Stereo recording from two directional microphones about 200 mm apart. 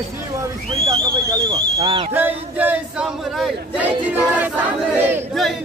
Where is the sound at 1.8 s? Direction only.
25° right (ahead or behind).